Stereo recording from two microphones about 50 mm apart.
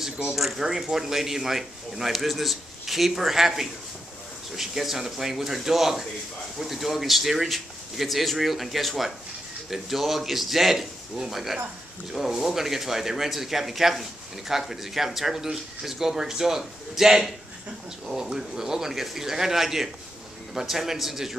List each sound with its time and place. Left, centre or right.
0.4 s a man's voice: centre